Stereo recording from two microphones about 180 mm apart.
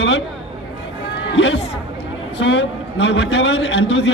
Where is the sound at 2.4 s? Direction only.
70° left (ahead or behind).